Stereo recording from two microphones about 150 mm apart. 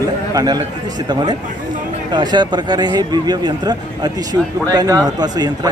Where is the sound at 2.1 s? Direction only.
30° right (ahead or behind).